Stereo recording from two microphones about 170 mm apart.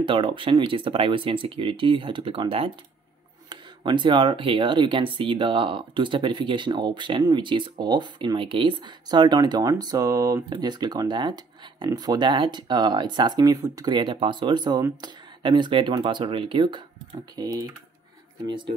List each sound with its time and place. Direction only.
0.0 s speech: 30° right (ahead or behind)